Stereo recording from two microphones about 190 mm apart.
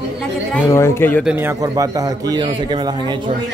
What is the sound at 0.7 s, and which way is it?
Speech, 15° left (ahead or behind).